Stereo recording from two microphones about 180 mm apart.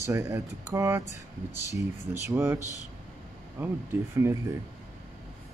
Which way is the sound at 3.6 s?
15° right (ahead or behind).